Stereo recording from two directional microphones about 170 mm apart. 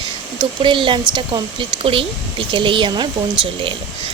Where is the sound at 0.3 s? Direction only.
30° right (ahead or behind).